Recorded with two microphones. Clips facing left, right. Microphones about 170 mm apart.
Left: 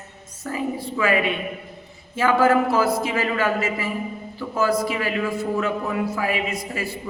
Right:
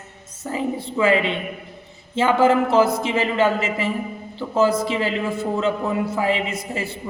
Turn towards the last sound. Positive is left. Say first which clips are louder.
# right 1 dB
turn(degrees=-25)  # may be behind; listen again after turning